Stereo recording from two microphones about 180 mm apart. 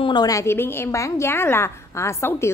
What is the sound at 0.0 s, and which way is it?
A woman's voice, 25° left (ahead or behind).